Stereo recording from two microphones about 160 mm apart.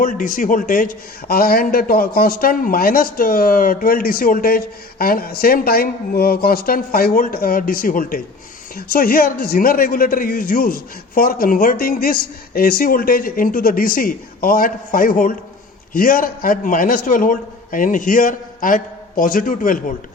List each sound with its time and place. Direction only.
0.0 s a man's voice: 55° left (ahead or behind)